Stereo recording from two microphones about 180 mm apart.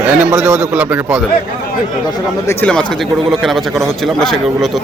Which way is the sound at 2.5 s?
10° left (ahead or behind).